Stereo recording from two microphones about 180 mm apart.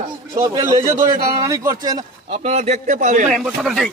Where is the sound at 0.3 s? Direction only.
20° right (ahead or behind); by 3.3 s 40° right (ahead or behind).